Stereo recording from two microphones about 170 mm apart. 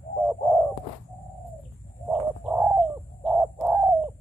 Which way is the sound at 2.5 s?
10° right (ahead or behind).